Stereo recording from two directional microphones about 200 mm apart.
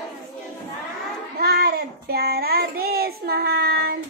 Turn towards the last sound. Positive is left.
turn(degrees=-50)  # may be behind; listen again after turning